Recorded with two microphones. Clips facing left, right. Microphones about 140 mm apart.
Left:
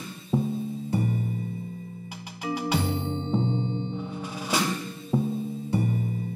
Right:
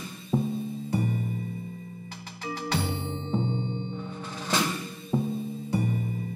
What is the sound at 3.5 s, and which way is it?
Music, 30° left (ahead or behind).